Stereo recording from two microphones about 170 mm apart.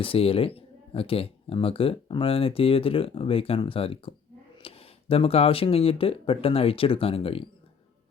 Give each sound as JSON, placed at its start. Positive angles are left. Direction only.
{"t": 0.0, "sound": "speech", "side_deg": 35}